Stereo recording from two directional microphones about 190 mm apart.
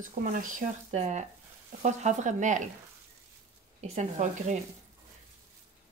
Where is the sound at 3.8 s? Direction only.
40° right (ahead or behind).